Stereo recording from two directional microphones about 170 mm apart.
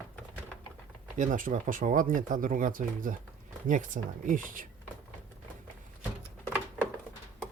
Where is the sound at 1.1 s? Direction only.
50° right (ahead or behind).